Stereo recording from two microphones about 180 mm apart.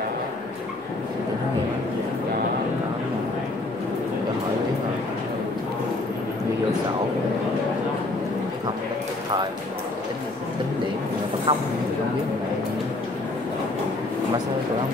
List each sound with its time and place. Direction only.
11.5 s a woman's voice: 25° right (ahead or behind)